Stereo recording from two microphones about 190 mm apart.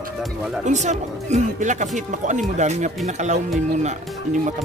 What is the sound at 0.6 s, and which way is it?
Speech, 40° right (ahead or behind).